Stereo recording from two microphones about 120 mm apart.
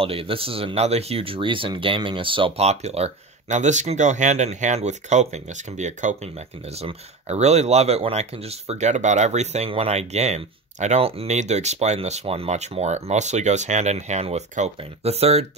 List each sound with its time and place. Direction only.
0.0 s speech: 50° right (ahead or behind)
2.6 s speech: 65° right (ahead or behind)
14.8 s speech: 60° right (ahead or behind)